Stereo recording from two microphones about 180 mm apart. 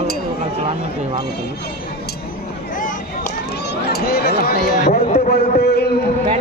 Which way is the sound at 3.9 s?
60° left (ahead or behind).